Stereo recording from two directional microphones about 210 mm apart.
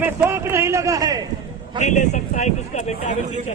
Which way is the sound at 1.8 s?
35° left (ahead or behind).